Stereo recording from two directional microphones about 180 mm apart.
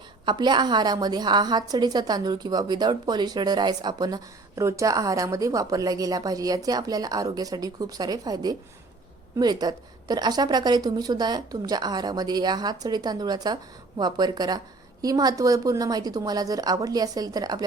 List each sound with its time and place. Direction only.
0.3 s a woman's voice: 25° right (ahead or behind)